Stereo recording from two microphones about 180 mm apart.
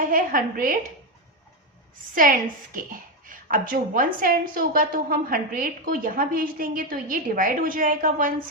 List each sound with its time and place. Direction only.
0.0 s speech: 50° right (ahead or behind)
2.1 s a woman's voice: 50° right (ahead or behind)